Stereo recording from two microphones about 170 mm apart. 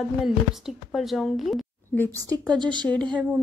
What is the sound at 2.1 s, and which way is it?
Speech, 25° right (ahead or behind).